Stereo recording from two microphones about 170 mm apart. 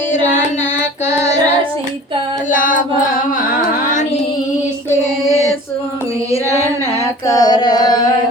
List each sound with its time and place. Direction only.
1.0 s child singing: 45° left (ahead or behind)
2.5 s chant: 50° left (ahead or behind)
5.2 s female singing: 15° left (ahead or behind)
7.0 s female singing: 20° left (ahead or behind)